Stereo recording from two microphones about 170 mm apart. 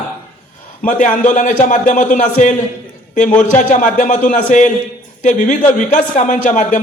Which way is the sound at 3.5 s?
50° left (ahead or behind).